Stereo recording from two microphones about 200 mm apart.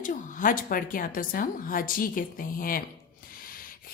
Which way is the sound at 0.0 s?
40° left (ahead or behind).